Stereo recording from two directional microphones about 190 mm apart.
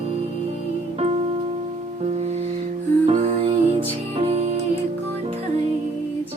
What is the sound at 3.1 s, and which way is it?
Music, 35° right (ahead or behind).